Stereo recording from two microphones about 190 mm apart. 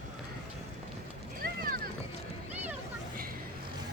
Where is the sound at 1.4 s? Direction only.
50° right (ahead or behind).